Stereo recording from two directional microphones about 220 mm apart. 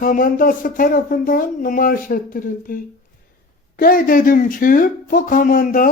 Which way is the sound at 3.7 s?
40° left (ahead or behind).